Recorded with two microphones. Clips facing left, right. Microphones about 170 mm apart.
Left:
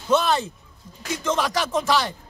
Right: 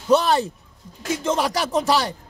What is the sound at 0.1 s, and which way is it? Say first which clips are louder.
Speech: right 3 dB; 35° right (ahead or behind).